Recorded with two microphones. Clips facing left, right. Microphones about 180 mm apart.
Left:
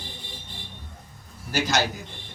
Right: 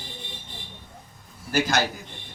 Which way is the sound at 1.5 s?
50° right (ahead or behind).